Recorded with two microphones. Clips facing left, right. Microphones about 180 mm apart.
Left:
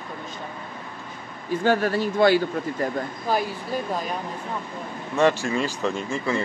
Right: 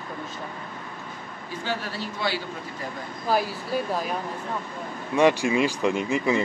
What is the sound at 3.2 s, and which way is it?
Speech, 5° right (ahead or behind).